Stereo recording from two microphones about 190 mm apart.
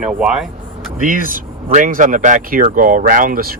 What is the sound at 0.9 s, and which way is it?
Speech, 45° right (ahead or behind).